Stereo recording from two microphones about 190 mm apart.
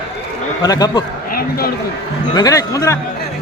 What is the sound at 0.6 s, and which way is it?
Speech, 20° left (ahead or behind).